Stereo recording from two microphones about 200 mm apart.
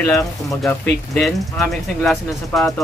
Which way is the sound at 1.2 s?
Centre (ahead or behind).